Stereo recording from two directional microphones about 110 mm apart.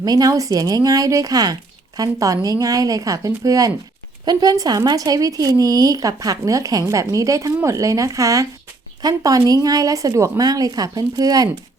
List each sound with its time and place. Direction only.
0.0 s a woman's voice: 35° right (ahead or behind)